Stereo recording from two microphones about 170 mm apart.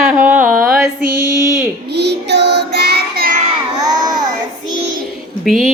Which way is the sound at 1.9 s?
80° right.